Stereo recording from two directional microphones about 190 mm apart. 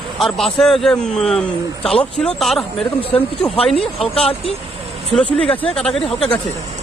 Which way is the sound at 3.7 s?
30° left (ahead or behind).